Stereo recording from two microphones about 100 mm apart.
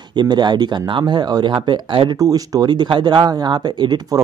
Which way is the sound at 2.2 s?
35° right (ahead or behind).